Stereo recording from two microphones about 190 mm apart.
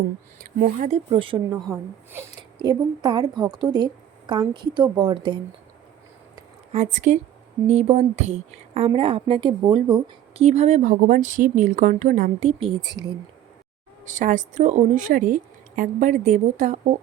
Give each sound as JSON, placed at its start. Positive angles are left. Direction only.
{"t": 0.9, "sound": "a woman's voice", "side_deg": -25}
{"t": 2.6, "sound": "a woman's voice", "side_deg": -20}
{"t": 6.7, "sound": "a woman's voice", "side_deg": -40}
{"t": 12.5, "sound": "speech", "side_deg": -30}
{"t": 14.0, "sound": "speech", "side_deg": -40}